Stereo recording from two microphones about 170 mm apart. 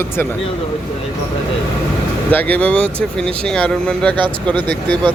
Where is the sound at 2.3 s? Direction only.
10° left (ahead or behind).